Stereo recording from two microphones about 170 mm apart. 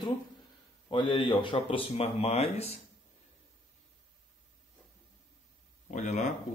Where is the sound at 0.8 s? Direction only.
30° left (ahead or behind).